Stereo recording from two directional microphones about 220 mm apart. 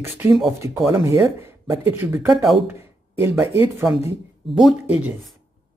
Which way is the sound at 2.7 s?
10° right (ahead or behind).